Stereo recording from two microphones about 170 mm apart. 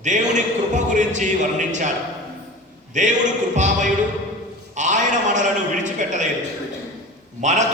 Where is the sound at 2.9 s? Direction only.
45° right (ahead or behind).